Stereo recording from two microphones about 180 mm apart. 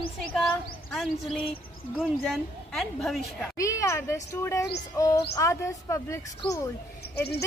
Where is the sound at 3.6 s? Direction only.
15° left (ahead or behind).